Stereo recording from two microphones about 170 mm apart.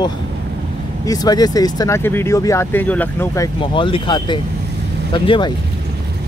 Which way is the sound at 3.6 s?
30° left (ahead or behind).